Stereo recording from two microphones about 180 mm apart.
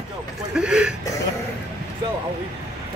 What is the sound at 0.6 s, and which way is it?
Speech, 5° right (ahead or behind).